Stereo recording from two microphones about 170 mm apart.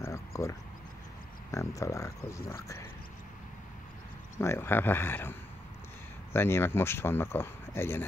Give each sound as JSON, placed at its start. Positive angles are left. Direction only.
{"t": 0.0, "sound": "a sound", "side_deg": 15}
{"t": 1.5, "sound": "speech", "side_deg": 20}
{"t": 4.4, "sound": "speech", "side_deg": 15}
{"t": 6.3, "sound": "speech", "side_deg": 15}